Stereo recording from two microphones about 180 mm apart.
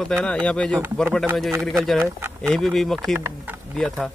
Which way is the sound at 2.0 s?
15° right (ahead or behind).